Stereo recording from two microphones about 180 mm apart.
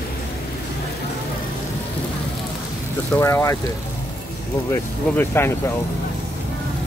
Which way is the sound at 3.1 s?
15° left (ahead or behind).